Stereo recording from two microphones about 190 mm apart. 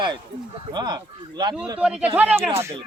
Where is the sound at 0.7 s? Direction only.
20° right (ahead or behind).